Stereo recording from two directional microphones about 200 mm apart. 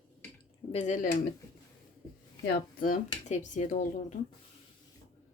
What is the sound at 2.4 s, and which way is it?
Speech, 45° left (ahead or behind).